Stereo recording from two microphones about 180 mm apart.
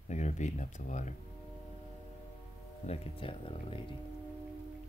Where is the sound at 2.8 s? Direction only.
35° left (ahead or behind).